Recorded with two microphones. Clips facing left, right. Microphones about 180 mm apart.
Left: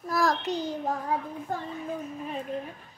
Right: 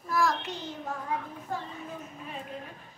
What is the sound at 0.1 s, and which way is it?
Child singing, 40° left (ahead or behind).